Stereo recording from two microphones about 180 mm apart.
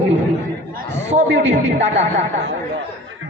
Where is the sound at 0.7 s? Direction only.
70° right (ahead or behind).